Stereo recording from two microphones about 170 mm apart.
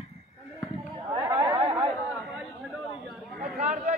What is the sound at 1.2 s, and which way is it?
Chatter, 15° right (ahead or behind).